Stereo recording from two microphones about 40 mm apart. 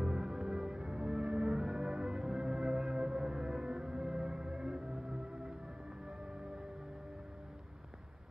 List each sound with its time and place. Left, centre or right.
0.0 s music: centre